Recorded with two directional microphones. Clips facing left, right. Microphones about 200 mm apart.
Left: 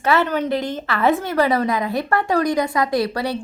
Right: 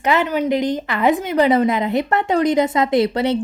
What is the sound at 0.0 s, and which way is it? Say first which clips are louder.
A woman's voice: right 1 dB; 15° right (ahead or behind).